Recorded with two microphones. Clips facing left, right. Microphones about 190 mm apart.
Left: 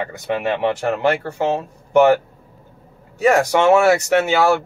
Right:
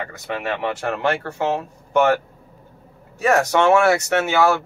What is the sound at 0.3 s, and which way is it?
Speech, 20° left (ahead or behind).